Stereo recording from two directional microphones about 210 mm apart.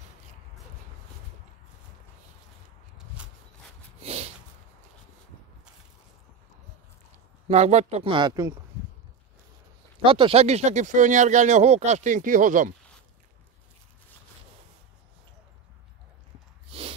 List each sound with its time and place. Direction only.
4.0 s snort: 30° right (ahead or behind)
7.4 s speech: 30° right (ahead or behind)
10.0 s speech: 25° right (ahead or behind)
16.7 s snort: 25° right (ahead or behind)